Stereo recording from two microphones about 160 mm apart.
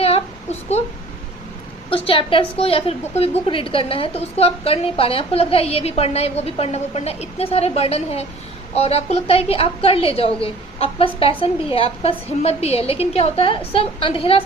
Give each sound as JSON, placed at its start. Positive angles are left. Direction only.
{"t": 1.9, "sound": "a woman's voice", "side_deg": 35}